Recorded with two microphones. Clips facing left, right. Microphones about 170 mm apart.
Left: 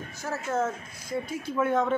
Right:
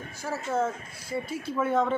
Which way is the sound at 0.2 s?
10° right (ahead or behind).